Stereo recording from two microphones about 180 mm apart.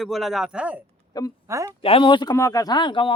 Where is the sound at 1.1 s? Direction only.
20° left (ahead or behind).